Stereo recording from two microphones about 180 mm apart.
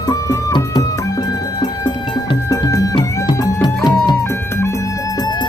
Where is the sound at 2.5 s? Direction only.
20° left (ahead or behind).